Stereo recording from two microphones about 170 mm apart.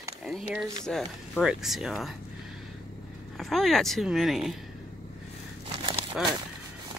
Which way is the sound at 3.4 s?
Centre (ahead or behind).